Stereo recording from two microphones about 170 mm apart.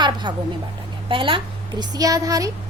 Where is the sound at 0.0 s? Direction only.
25° right (ahead or behind).